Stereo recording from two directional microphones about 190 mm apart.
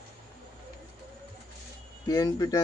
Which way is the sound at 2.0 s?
20° left (ahead or behind).